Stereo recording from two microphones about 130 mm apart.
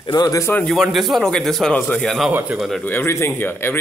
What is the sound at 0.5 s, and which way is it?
A man's voice, 5° left (ahead or behind).